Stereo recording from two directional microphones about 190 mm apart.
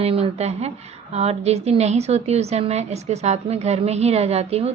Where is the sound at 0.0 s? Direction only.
30° right (ahead or behind).